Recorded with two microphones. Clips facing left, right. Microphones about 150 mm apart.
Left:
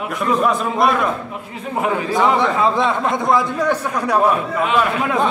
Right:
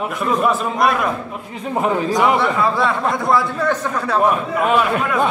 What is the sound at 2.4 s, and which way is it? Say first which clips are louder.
Speech: left 1 dB; 20° left (ahead or behind).